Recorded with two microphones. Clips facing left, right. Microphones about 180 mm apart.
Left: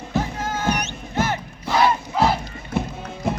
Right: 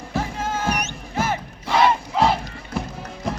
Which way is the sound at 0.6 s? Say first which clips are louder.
Left 2 dB; centre (ahead or behind).